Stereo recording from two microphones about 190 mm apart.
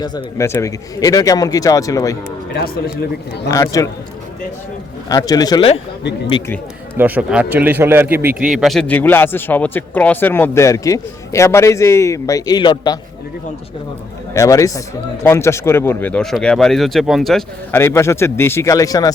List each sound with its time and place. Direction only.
0.0 s a man's voice: 20° left (ahead or behind)
2.5 s speech: 60° left (ahead or behind)
3.5 s a man's voice: 15° left (ahead or behind)
5.0 s speech: 20° left (ahead or behind)
6.9 s a man's voice: 10° right (ahead or behind); by 13.0 s 25° left (ahead or behind)
14.3 s a man's voice: 15° left (ahead or behind); by 17.4 s centre (ahead or behind)
17.7 s a man's voice: 15° left (ahead or behind)